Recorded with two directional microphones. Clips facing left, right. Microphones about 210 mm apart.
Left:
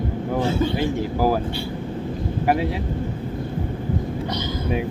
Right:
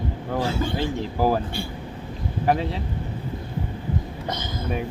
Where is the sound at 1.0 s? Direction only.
5° left (ahead or behind).